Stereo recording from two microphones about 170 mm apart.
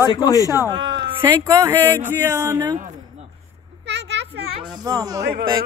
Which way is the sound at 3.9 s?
90° right.